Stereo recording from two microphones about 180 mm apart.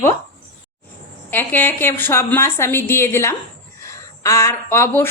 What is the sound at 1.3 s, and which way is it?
A woman's voice, 10° left (ahead or behind).